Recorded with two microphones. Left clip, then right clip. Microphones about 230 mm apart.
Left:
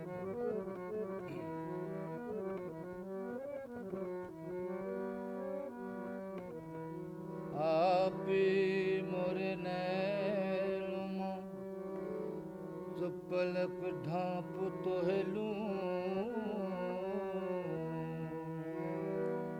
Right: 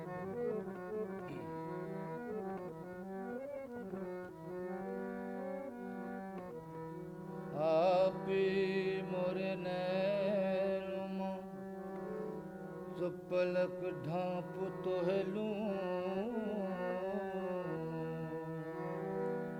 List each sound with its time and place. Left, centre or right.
7.5 s mantra: centre
13.0 s mantra: centre
16.4 s carnatic music: centre